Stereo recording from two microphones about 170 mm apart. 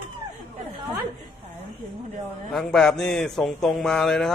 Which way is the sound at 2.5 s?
Centre (ahead or behind).